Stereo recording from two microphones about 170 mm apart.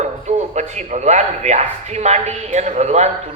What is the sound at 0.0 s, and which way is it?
A man's voice, 40° right (ahead or behind).